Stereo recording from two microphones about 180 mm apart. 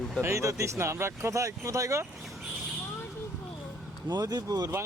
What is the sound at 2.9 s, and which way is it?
Vehicle, 15° left (ahead or behind).